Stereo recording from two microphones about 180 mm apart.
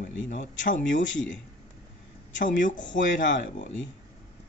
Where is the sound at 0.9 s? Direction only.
85° left.